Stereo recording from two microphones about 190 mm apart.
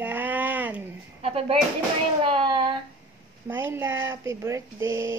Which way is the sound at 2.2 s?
25° right (ahead or behind).